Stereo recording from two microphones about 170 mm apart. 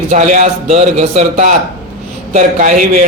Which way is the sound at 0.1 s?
50° right (ahead or behind).